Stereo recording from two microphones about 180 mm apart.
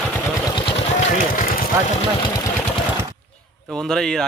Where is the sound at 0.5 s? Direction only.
35° left (ahead or behind); by 1.7 s 55° left (ahead or behind).